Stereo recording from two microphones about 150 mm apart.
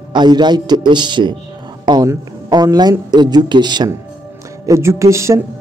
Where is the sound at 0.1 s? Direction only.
30° right (ahead or behind).